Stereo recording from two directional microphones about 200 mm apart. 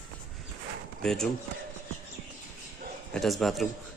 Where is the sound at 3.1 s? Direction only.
Centre (ahead or behind).